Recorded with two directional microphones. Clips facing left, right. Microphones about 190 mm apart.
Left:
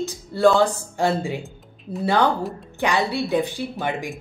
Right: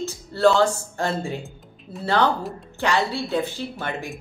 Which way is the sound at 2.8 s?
15° left (ahead or behind).